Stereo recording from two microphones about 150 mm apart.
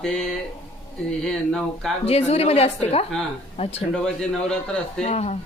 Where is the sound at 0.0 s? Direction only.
5° left (ahead or behind).